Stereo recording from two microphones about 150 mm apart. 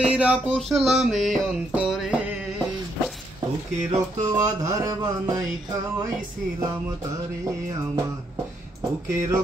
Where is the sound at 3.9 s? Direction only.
20° right (ahead or behind).